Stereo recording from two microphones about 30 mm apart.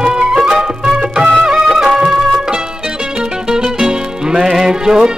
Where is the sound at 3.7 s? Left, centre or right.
Right.